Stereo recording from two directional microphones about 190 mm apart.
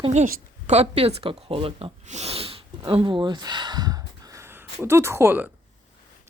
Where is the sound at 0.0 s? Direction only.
35° right (ahead or behind); by 5.5 s 10° right (ahead or behind).